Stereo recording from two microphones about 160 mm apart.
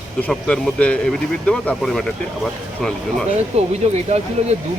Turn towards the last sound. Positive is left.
turn(degrees=-45)  # may be behind; listen again after turning